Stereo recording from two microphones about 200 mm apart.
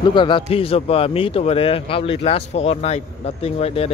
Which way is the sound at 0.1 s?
25° left (ahead or behind).